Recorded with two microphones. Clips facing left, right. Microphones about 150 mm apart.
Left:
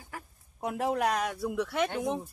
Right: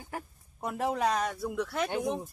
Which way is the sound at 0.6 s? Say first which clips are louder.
Left 1 dB; 5° left (ahead or behind).